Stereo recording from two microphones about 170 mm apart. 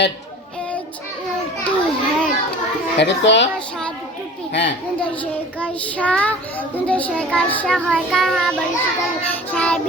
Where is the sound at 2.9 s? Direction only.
90° left.